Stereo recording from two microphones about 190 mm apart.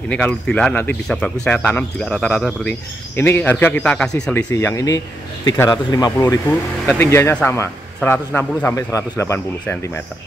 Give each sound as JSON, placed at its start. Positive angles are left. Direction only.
{"t": 0.1, "sound": "a man's voice", "side_deg": 5}